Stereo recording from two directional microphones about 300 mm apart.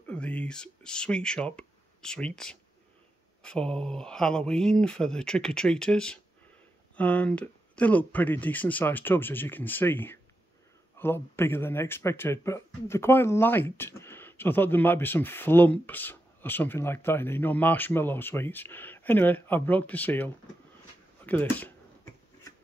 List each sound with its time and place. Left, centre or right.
0.1 s speech: centre